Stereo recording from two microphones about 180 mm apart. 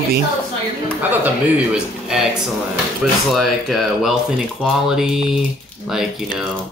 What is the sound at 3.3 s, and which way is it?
Speech, centre (ahead or behind).